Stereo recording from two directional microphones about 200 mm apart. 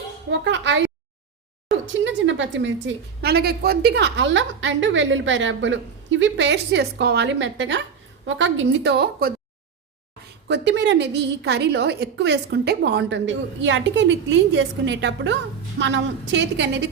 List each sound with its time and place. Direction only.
0.3 s a woman's voice: 65° right (ahead or behind)
1.9 s a woman's voice: 70° right (ahead or behind)
10.5 s a woman's voice: 60° right (ahead or behind)